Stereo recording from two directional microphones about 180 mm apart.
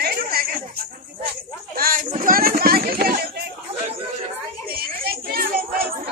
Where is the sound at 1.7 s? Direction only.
50° right (ahead or behind).